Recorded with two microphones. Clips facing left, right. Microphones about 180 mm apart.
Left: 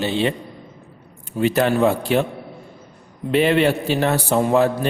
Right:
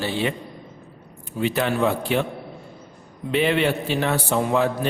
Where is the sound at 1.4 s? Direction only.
45° left (ahead or behind).